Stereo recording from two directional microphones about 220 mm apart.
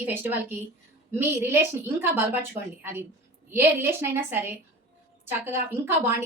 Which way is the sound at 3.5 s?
10° right (ahead or behind).